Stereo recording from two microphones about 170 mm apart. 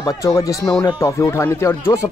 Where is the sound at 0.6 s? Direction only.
5° left (ahead or behind).